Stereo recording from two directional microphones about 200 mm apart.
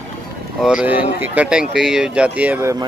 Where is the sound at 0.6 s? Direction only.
5° right (ahead or behind).